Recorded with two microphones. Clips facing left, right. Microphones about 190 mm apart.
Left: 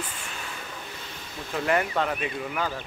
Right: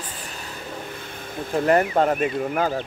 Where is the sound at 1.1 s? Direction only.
55° right (ahead or behind).